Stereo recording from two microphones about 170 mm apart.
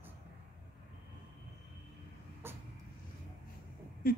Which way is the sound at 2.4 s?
15° right (ahead or behind).